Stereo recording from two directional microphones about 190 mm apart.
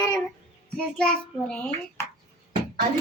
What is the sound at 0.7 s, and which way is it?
Speech, 5° left (ahead or behind).